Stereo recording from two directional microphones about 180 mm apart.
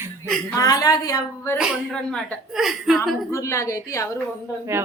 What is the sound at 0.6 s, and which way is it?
A woman's voice, 20° left (ahead or behind).